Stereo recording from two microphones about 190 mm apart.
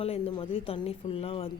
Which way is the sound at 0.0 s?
30° left (ahead or behind).